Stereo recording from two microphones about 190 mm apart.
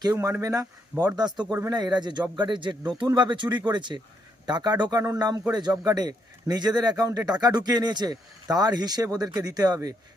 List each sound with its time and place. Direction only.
0.0 s a man's voice: 15° right (ahead or behind)